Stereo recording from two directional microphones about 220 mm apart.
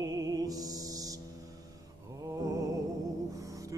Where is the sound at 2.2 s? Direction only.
15° right (ahead or behind).